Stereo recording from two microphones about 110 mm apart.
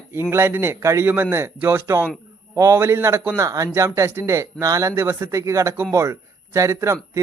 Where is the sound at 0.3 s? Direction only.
20° right (ahead or behind).